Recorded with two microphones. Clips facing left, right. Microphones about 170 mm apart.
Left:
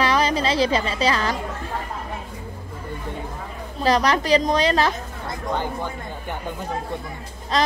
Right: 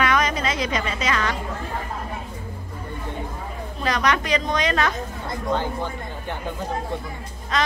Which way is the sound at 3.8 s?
35° left (ahead or behind).